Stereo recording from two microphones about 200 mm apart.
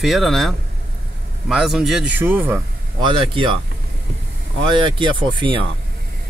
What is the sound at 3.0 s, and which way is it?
Speech, 25° right (ahead or behind).